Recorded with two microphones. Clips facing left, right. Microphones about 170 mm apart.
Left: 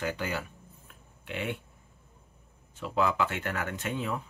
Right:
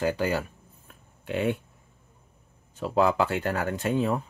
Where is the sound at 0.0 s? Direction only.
35° right (ahead or behind).